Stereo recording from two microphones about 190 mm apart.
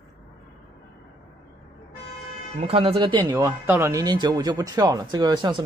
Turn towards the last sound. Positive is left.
turn(degrees=-25)  # may be behind; listen again after turning